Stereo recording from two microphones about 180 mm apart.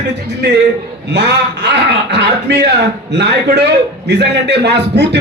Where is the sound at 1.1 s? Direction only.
70° right (ahead or behind).